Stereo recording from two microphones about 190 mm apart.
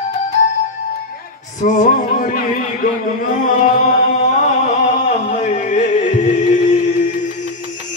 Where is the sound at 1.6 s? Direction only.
40° left (ahead or behind).